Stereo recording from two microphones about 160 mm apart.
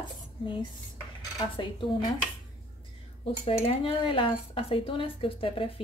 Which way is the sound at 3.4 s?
40° left (ahead or behind).